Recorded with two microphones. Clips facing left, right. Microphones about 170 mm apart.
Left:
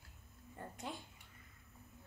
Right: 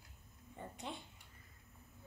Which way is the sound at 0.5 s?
Centre (ahead or behind).